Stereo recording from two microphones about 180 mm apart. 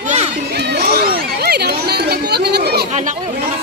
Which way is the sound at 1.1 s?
60° right (ahead or behind).